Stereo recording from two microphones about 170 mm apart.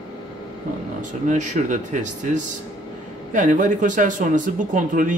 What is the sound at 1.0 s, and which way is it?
Speech, 45° right (ahead or behind).